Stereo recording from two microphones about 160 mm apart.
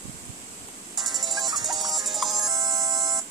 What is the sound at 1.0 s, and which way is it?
Music, centre (ahead or behind).